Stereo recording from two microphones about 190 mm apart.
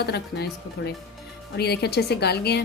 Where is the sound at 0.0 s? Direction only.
55° left (ahead or behind).